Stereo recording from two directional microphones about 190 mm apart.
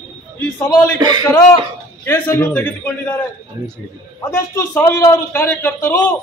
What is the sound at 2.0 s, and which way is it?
A man's voice, 10° left (ahead or behind).